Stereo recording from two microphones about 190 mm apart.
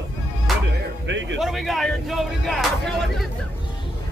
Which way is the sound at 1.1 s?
70° right (ahead or behind).